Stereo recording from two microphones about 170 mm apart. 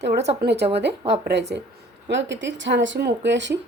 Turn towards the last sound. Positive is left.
turn(degrees=-90)